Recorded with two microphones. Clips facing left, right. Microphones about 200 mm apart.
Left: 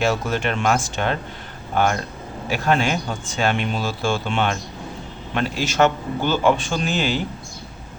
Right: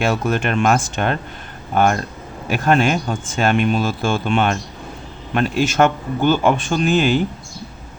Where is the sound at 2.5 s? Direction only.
50° right (ahead or behind).